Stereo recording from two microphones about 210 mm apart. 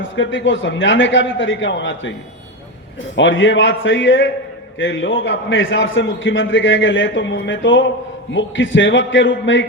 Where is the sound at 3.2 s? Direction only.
65° left (ahead or behind).